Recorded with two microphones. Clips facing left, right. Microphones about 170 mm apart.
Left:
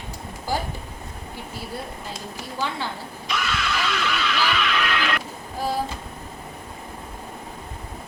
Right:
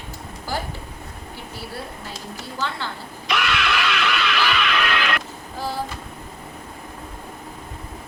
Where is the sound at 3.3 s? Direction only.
70° right (ahead or behind).